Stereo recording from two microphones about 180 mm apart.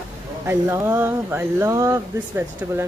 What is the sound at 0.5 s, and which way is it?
Speech, 15° right (ahead or behind).